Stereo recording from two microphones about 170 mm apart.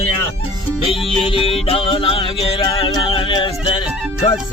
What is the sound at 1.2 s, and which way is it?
Music, 30° left (ahead or behind).